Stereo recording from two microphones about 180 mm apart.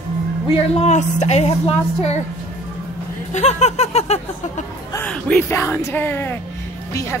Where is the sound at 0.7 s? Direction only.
40° left (ahead or behind).